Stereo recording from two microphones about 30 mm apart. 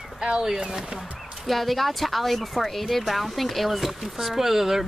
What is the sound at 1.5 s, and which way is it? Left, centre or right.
Speech, centre.